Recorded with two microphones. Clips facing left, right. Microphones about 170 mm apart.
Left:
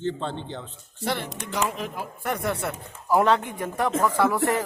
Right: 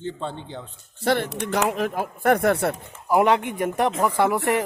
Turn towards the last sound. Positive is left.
turn(degrees=-20)  # may be behind; listen again after turning